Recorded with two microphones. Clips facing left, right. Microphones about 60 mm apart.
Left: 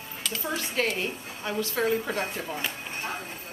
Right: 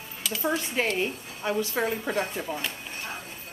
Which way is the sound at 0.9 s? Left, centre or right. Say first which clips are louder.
Right 3 dB; centre.